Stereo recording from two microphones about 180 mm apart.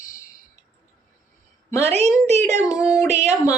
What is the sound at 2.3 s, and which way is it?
Speech, 40° right (ahead or behind).